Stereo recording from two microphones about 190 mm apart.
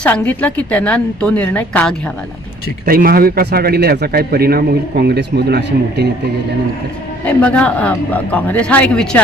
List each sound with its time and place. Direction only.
0.0 s a woman's voice: 10° left (ahead or behind)
2.8 s a man's voice: 50° right (ahead or behind)
7.3 s a woman's voice: 5° left (ahead or behind)